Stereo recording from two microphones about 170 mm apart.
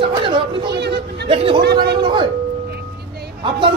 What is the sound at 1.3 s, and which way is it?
Speech, 35° right (ahead or behind).